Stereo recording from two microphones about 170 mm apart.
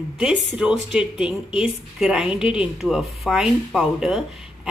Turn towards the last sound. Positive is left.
turn(degrees=-5)  # may be behind; listen again after turning